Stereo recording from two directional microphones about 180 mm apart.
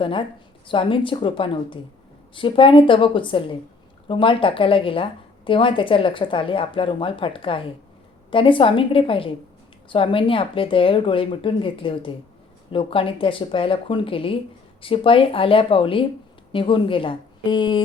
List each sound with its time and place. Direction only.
0.0 s speech: 30° left (ahead or behind)